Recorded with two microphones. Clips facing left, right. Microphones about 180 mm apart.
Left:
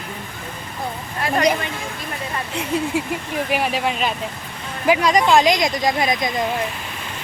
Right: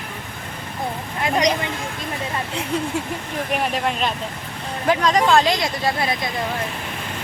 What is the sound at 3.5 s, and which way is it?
Speech, 5° left (ahead or behind).